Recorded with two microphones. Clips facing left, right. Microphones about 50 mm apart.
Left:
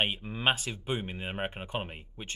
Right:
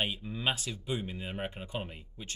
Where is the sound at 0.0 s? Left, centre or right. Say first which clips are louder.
Left 4 dB; left.